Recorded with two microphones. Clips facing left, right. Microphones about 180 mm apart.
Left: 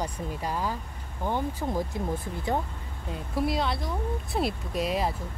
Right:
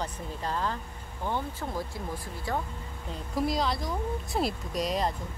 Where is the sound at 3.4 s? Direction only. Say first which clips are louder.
Left 1 dB; 5° left (ahead or behind).